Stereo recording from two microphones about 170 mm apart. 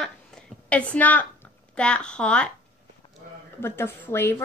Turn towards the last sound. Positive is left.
turn(degrees=10)  # may be behind; listen again after turning